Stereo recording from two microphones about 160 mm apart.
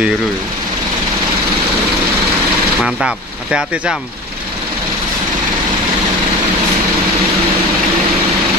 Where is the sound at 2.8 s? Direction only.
5° right (ahead or behind).